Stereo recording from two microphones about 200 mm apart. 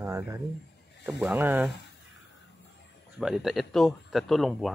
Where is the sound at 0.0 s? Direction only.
15° right (ahead or behind).